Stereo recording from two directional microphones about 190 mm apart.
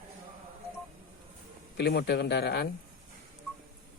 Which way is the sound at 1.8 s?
60° left (ahead or behind).